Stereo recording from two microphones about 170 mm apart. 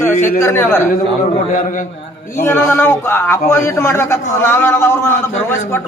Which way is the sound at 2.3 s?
10° left (ahead or behind).